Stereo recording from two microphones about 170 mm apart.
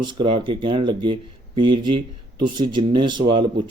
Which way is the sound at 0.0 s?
25° right (ahead or behind).